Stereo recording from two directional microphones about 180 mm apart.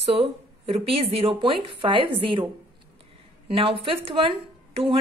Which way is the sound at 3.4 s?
30° right (ahead or behind).